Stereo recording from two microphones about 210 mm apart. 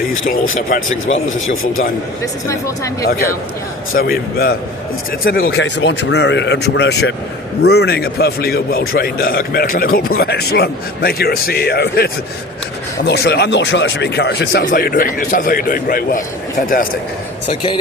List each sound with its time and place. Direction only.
1.0 s a man's voice: 65° left (ahead or behind)
2.5 s speech: 15° left (ahead or behind)
3.9 s speech: 45° left (ahead or behind)
5.5 s a man's voice: 55° left (ahead or behind)
17.5 s speech: 25° left (ahead or behind)